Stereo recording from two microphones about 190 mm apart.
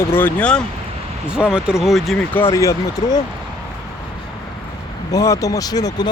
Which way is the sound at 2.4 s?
15° left (ahead or behind).